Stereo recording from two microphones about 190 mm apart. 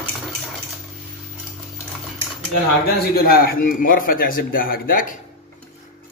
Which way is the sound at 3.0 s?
55° left (ahead or behind).